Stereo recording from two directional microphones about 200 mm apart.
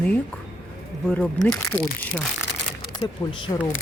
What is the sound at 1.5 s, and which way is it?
Speech, 5° left (ahead or behind).